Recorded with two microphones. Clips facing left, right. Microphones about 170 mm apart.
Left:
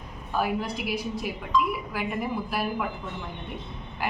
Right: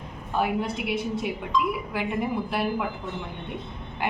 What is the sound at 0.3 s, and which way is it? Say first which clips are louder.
Speech: right 2 dB; 25° right (ahead or behind).